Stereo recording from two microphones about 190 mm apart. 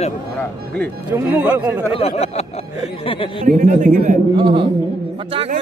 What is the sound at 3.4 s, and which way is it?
Speech, 40° right (ahead or behind).